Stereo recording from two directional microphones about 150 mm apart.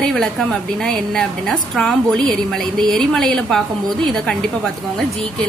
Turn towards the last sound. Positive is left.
turn(degrees=5)  # may be behind; listen again after turning